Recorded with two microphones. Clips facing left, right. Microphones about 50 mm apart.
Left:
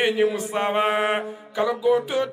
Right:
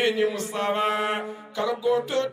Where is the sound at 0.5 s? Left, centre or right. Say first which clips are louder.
Left 3 dB; left.